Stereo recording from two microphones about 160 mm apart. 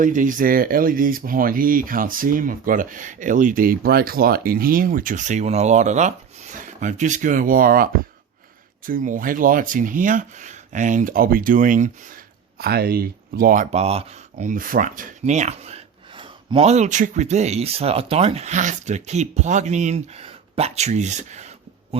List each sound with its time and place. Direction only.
0.0 s speech: 55° right (ahead or behind)
8.9 s speech: 55° right (ahead or behind)
12.5 s speech: 75° right (ahead or behind)
13.7 s speech: 40° right (ahead or behind)